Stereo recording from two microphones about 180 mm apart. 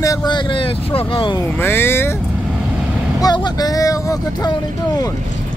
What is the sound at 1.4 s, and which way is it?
Speech, 10° left (ahead or behind).